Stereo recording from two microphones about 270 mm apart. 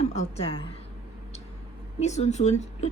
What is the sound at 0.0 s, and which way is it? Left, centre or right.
Speech, left.